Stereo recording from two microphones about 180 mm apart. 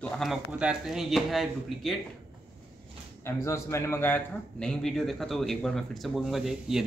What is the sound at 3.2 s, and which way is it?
A man's voice, 15° left (ahead or behind).